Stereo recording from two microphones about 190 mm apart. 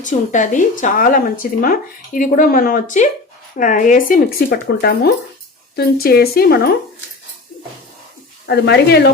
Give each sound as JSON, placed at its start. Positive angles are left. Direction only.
{"t": 0.0, "sound": "speech", "side_deg": 40}
{"t": 8.4, "sound": "speech", "side_deg": 60}